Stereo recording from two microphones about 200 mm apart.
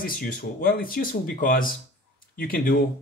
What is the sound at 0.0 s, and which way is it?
Speech, 45° left (ahead or behind).